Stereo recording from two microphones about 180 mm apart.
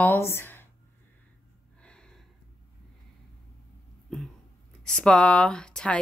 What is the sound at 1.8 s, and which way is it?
Gasp, 5° left (ahead or behind).